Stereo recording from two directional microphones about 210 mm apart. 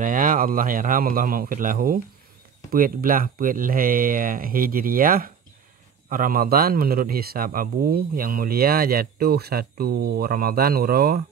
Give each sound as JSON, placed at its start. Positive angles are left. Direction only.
{"t": 0.0, "sound": "a man's voice", "side_deg": -40}